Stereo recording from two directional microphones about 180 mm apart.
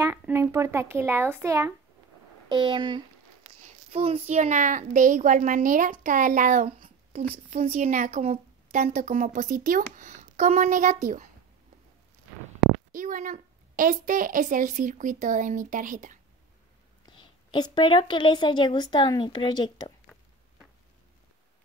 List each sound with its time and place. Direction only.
0.0 s speech: 15° right (ahead or behind)
2.5 s a woman's voice: 25° right (ahead or behind); by 11.2 s 45° right (ahead or behind)
12.9 s a woman's voice: 45° right (ahead or behind)
17.2 s a woman's voice: 25° left (ahead or behind)